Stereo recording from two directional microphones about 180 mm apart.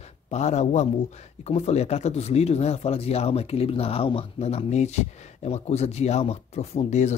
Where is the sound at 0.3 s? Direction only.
40° left (ahead or behind).